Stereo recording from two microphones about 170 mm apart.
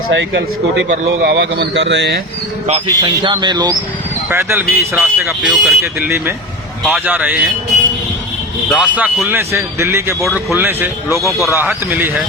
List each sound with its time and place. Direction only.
0.1 s speech: 90° right
2.8 s speech: 25° right (ahead or behind)
4.3 s speech: 15° right (ahead or behind)
8.7 s speech: 5° right (ahead or behind)